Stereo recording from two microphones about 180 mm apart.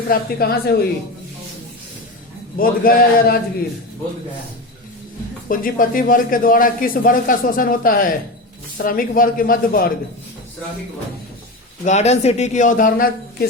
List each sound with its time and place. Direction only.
0.1 s a woman's voice: 55° left (ahead or behind)
2.6 s speech: 50° left (ahead or behind)
5.5 s speech: 50° left (ahead or behind)
11.9 s speech: 40° left (ahead or behind)